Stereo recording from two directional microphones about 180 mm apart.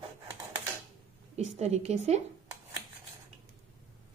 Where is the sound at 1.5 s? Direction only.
35° right (ahead or behind).